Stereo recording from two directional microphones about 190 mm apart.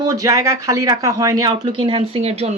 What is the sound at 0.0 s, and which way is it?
A woman's voice, 20° right (ahead or behind).